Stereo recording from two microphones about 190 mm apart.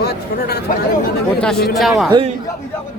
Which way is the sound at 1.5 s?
55° left (ahead or behind).